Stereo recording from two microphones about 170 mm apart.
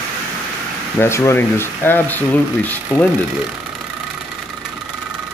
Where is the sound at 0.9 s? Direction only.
15° left (ahead or behind).